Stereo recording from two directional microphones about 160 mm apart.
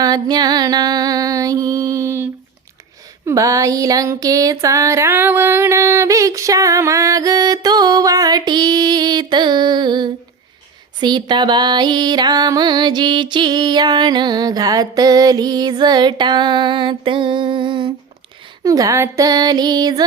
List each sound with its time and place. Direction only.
0.0 s music: 25° right (ahead or behind)